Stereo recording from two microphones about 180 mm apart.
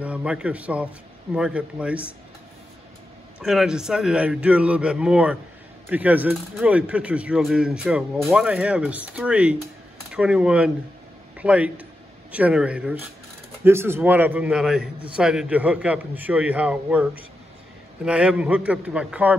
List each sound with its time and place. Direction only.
0.0 s speech: 5° right (ahead or behind)
3.3 s a man's voice: 5° right (ahead or behind)